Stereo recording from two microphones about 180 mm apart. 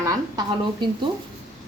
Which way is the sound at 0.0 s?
20° right (ahead or behind).